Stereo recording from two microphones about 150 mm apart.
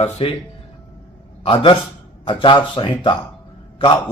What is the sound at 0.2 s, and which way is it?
Speech, 40° left (ahead or behind).